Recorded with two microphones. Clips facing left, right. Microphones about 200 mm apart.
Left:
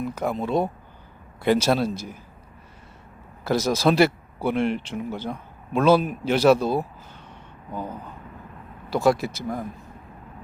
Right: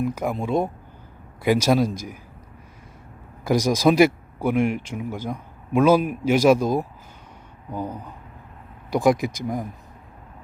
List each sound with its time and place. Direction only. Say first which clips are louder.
0.0 s speech: right 1 dB; 10° right (ahead or behind)
3.4 s speech: right 2 dB; 15° right (ahead or behind)